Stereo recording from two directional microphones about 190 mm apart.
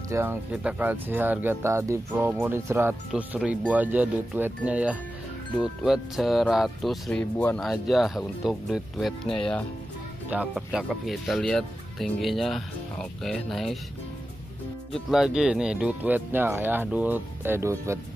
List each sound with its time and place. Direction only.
0.1 s speech: 10° right (ahead or behind)
10.3 s speech: 5° right (ahead or behind)
14.9 s speech: centre (ahead or behind)